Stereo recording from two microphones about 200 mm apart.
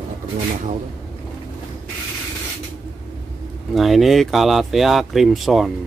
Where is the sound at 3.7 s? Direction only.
Centre (ahead or behind).